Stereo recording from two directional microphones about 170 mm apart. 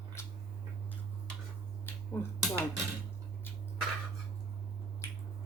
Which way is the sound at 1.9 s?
10° left (ahead or behind).